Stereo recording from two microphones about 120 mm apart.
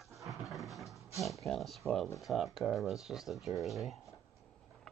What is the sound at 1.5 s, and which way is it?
Speech, centre (ahead or behind).